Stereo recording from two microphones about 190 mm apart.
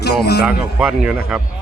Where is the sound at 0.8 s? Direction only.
5° right (ahead or behind).